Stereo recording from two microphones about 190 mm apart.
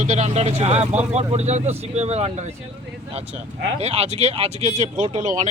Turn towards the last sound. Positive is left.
turn(degrees=-40)  # may be behind; listen again after turning